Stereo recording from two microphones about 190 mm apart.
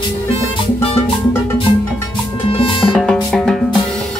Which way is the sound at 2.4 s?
30° left (ahead or behind).